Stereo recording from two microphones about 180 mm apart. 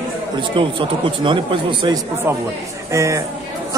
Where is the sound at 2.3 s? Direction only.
15° right (ahead or behind).